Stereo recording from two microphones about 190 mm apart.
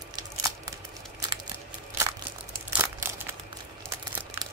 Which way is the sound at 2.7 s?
10° right (ahead or behind).